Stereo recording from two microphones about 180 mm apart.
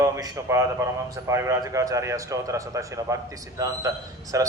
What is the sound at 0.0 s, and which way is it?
A man's voice, 20° right (ahead or behind).